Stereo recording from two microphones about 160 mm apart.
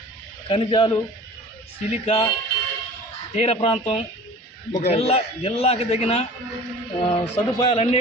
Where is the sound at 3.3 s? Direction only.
40° left (ahead or behind).